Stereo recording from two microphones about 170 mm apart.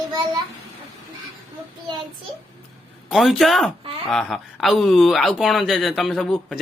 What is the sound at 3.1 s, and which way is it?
Speech, centre (ahead or behind).